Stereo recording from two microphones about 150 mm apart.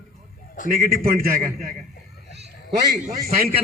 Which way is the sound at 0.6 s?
60° left (ahead or behind).